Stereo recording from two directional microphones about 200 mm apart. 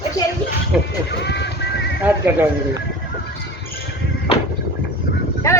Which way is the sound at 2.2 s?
10° right (ahead or behind).